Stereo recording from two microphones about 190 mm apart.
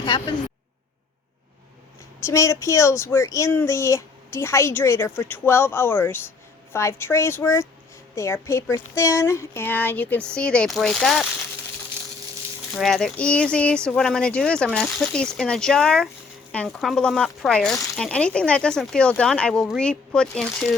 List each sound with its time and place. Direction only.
0.0 s a woman's voice: 25° left (ahead or behind)
2.2 s speech: 15° left (ahead or behind)
12.8 s speech: centre (ahead or behind)